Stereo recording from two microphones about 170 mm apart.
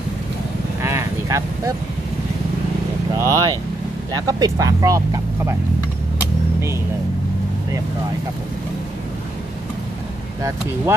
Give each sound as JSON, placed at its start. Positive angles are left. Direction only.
{"t": 0.8, "sound": "vehicle", "side_deg": -15}
{"t": 3.2, "sound": "speech", "side_deg": -20}